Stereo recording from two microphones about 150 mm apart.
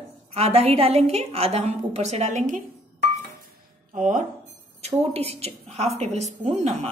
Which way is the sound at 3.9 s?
60° right (ahead or behind).